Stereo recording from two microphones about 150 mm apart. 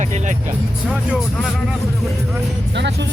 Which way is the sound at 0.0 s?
55° right (ahead or behind).